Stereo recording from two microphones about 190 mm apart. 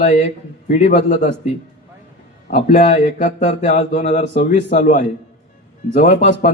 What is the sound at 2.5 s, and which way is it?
Speech, 40° left (ahead or behind).